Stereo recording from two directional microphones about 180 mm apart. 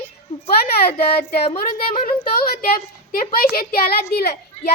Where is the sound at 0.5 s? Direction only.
60° left (ahead or behind).